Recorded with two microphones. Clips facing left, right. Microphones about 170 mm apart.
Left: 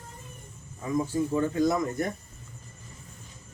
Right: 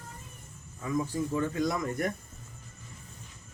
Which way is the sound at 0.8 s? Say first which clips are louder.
Left 3 dB; 25° left (ahead or behind).